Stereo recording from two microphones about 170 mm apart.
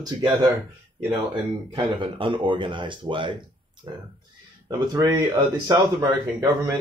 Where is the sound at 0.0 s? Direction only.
25° right (ahead or behind).